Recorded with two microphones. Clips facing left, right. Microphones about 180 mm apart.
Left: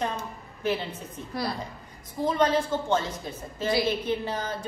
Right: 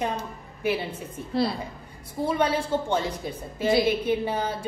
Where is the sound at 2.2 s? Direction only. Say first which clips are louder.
Left 1 dB; 10° right (ahead or behind).